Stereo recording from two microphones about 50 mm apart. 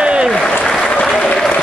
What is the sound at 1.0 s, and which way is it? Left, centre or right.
Applause, centre.